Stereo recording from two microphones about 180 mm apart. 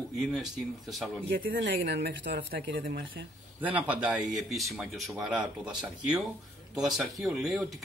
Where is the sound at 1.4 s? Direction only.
70° right (ahead or behind).